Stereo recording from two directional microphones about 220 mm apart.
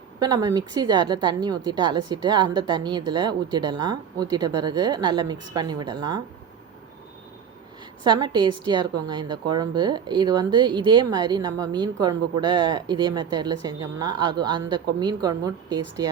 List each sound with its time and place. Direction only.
0.2 s a woman's voice: 20° right (ahead or behind)
8.0 s a woman's voice: 20° right (ahead or behind)